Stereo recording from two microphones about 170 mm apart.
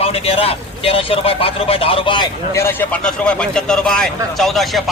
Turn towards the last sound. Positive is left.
turn(degrees=0)  # may be behind; listen again after turning